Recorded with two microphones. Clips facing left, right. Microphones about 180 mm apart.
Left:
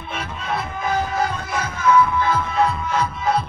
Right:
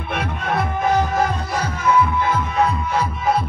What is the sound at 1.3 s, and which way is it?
Music, 35° right (ahead or behind).